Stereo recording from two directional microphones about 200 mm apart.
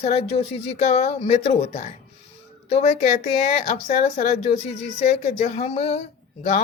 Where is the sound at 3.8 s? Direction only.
45° left (ahead or behind).